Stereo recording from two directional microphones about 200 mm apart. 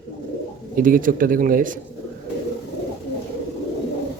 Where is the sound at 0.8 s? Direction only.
45° right (ahead or behind).